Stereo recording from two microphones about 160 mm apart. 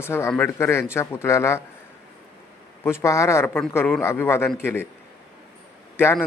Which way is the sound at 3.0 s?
20° left (ahead or behind).